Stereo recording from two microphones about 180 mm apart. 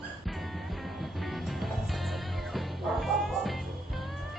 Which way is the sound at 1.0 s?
Centre (ahead or behind).